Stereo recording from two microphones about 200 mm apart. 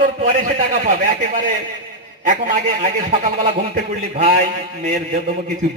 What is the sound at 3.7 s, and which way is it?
A man's voice, 30° right (ahead or behind).